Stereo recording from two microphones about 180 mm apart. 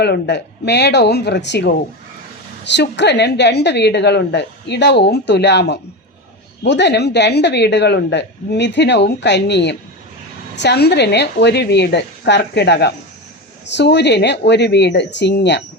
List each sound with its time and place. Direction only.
0.0 s a woman's voice: 70° left (ahead or behind)